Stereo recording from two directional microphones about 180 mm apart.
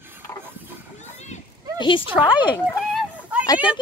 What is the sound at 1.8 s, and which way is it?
Speech, 30° left (ahead or behind).